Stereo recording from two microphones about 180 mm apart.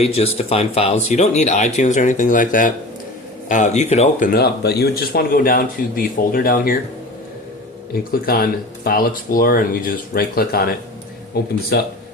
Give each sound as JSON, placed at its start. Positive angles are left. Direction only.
{"t": 0.0, "sound": "speech", "side_deg": 35}
{"t": 4.3, "sound": "speech", "side_deg": 60}
{"t": 7.9, "sound": "speech", "side_deg": 55}